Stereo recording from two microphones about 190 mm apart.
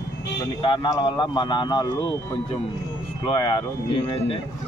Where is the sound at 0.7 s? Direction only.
25° left (ahead or behind).